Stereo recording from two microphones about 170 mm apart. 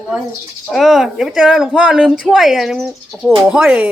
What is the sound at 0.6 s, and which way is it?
Speech, centre (ahead or behind).